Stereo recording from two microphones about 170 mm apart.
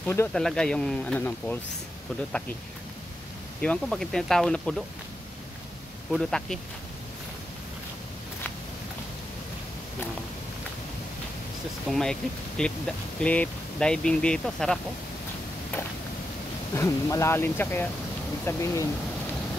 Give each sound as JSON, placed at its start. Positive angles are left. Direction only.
{"t": 0.0, "sound": "speech", "side_deg": 15}
{"t": 0.3, "sound": "speech", "side_deg": 5}
{"t": 3.6, "sound": "speech", "side_deg": 5}
{"t": 6.1, "sound": "speech", "side_deg": 5}
{"t": 11.9, "sound": "speech", "side_deg": 5}
{"t": 16.7, "sound": "speech", "side_deg": 15}